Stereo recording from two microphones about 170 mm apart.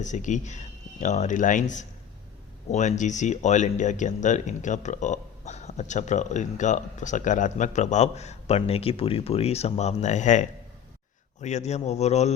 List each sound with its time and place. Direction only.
0.0 s speech: 45° left (ahead or behind)